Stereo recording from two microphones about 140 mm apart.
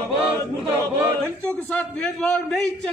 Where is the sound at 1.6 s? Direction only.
10° left (ahead or behind).